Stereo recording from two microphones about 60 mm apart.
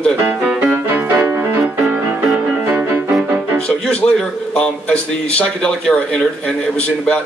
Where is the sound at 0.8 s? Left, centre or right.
Right.